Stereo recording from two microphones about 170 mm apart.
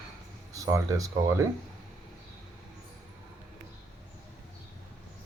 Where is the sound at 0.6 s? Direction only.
20° right (ahead or behind).